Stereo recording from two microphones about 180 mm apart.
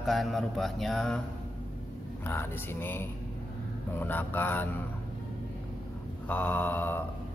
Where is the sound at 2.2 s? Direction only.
10° left (ahead or behind).